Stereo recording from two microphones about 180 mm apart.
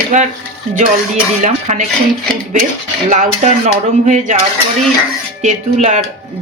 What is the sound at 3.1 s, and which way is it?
Speech, 45° right (ahead or behind).